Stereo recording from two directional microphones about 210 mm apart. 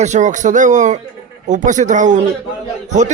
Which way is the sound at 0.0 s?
35° right (ahead or behind).